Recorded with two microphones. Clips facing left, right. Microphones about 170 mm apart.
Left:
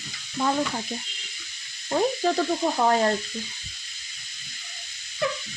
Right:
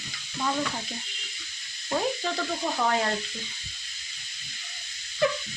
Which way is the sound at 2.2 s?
40° left (ahead or behind).